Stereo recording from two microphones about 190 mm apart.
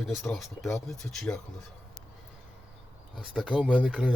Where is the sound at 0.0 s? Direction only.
Centre (ahead or behind).